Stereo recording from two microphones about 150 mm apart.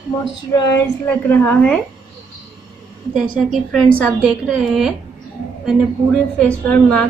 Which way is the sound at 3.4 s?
5° left (ahead or behind).